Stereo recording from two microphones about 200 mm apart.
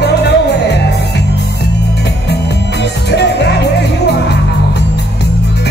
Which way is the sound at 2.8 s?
55° left (ahead or behind).